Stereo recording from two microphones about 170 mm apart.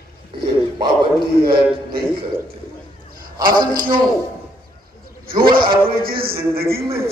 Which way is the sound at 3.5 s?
25° right (ahead or behind).